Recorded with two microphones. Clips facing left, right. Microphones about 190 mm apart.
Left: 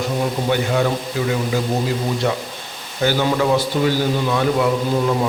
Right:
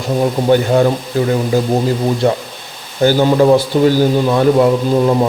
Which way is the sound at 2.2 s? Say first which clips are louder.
Right 6 dB; 30° right (ahead or behind).